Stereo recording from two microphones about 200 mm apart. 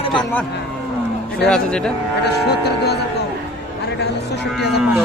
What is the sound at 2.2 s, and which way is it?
Speech, 55° left (ahead or behind).